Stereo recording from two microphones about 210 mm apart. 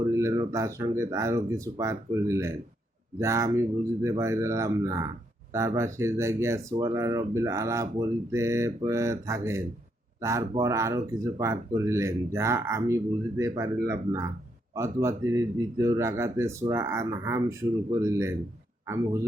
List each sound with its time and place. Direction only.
0.1 s speech: 15° right (ahead or behind)